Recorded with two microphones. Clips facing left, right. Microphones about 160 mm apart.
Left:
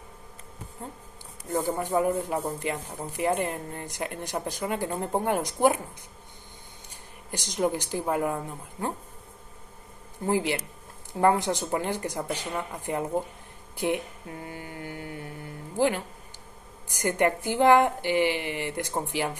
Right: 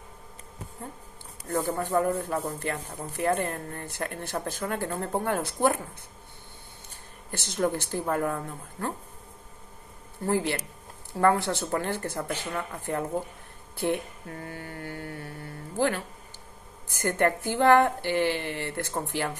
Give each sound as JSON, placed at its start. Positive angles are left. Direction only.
{"t": 1.5, "sound": "speech", "side_deg": 15}
{"t": 7.2, "sound": "speech", "side_deg": 15}
{"t": 10.2, "sound": "speech", "side_deg": 15}